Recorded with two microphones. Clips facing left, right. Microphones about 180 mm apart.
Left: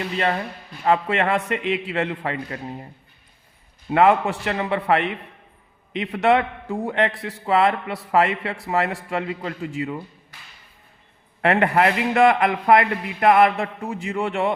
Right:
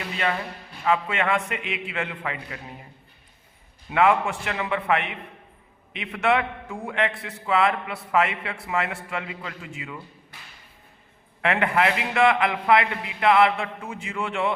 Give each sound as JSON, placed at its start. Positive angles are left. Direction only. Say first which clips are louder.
{"t": 0.9, "sound": "a man's voice", "louder": "left 4 dB", "side_deg": 40}
{"t": 3.8, "sound": "a man's voice", "louder": "left 4 dB", "side_deg": 35}
{"t": 11.4, "sound": "a man's voice", "louder": "left 4 dB", "side_deg": 35}